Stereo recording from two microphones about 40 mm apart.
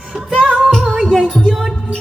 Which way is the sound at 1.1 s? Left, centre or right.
Centre.